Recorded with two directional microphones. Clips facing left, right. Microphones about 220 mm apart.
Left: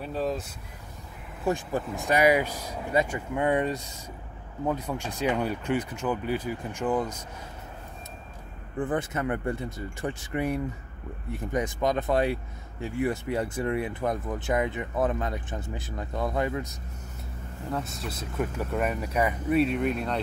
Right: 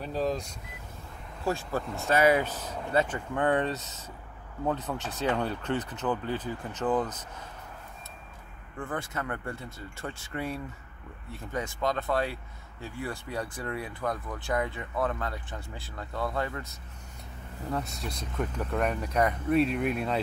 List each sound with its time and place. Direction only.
0.0 s speech: centre (ahead or behind)
1.4 s speech: 15° left (ahead or behind)
8.7 s speech: 20° left (ahead or behind)
17.6 s speech: centre (ahead or behind)